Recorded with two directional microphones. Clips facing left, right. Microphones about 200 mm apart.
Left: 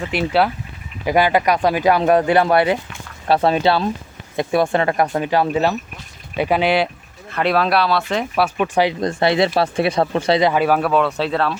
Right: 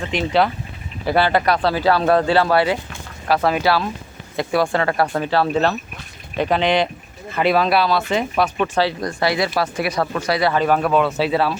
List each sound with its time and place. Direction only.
0.0 s speech: 5° left (ahead or behind)
8.5 s speech: 15° left (ahead or behind)
10.5 s speech: 5° left (ahead or behind)